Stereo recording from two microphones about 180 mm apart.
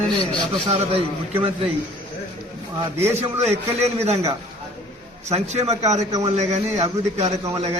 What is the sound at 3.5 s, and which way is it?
A man's voice, 35° right (ahead or behind).